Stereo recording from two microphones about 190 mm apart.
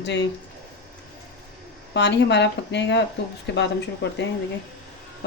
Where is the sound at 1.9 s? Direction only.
65° left (ahead or behind).